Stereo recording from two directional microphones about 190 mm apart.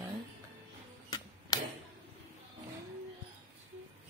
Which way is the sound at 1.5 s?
20° left (ahead or behind).